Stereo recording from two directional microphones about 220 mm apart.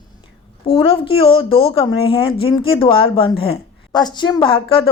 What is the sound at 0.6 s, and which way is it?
Speech, 25° left (ahead or behind).